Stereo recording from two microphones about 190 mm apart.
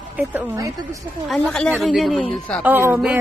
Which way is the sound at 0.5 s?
15° right (ahead or behind).